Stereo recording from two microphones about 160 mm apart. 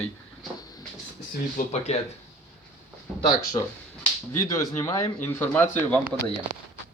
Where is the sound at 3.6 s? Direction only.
25° left (ahead or behind).